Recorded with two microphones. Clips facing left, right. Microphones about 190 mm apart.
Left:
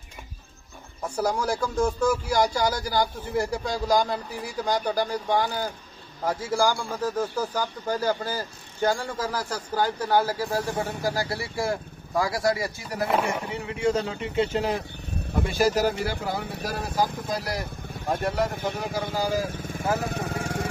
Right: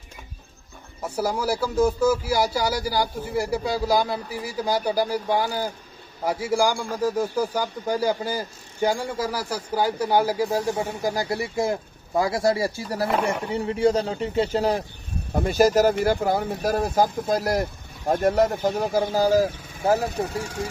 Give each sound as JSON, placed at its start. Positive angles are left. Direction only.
{"t": 1.1, "sound": "a man's voice", "side_deg": -5}
{"t": 19.5, "sound": "vehicle", "side_deg": 50}
{"t": 20.1, "sound": "speech", "side_deg": 55}